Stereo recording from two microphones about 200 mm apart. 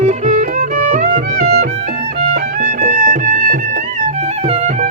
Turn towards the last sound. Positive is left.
turn(degrees=-30)  # may be behind; listen again after turning